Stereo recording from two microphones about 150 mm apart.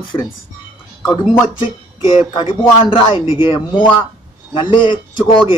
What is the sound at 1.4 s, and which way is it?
Speech, 35° left (ahead or behind).